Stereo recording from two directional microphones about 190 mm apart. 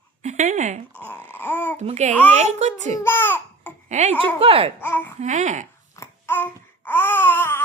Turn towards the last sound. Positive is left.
turn(degrees=10)  # may be behind; listen again after turning